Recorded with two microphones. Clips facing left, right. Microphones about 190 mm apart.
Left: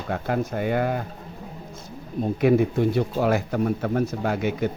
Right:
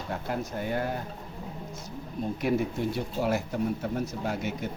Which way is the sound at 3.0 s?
90° left.